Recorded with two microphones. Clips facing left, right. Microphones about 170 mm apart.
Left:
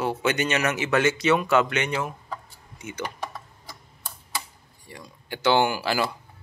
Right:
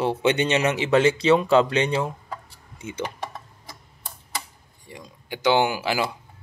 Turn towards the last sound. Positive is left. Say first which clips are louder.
# right 1 dB
turn(degrees=-15)  # may be behind; listen again after turning